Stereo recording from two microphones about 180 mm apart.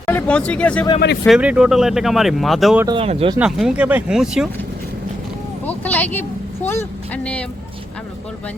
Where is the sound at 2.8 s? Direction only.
30° right (ahead or behind).